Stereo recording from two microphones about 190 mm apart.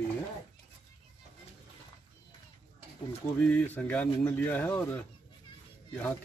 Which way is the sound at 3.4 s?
5° left (ahead or behind).